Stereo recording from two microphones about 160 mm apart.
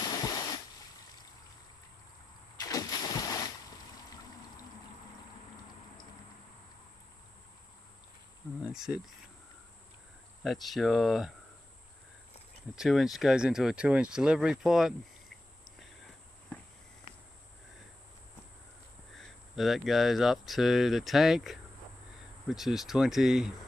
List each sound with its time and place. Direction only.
0.0 s a sound: 25° left (ahead or behind)
2.6 s splash: 25° left (ahead or behind)
8.6 s speech: 5° right (ahead or behind)
10.4 s speech: centre (ahead or behind)
12.7 s speech: centre (ahead or behind)
19.1 s speech: centre (ahead or behind)